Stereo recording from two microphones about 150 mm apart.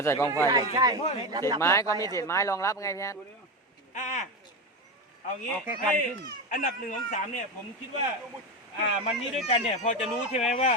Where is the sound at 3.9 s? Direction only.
55° left (ahead or behind).